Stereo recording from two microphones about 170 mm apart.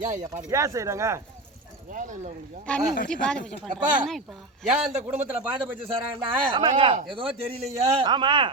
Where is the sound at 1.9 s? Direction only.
50° right (ahead or behind).